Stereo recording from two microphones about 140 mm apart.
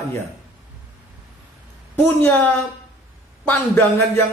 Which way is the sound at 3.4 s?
15° left (ahead or behind).